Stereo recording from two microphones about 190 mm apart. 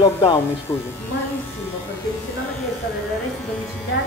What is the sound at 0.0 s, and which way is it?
Speech, 20° left (ahead or behind).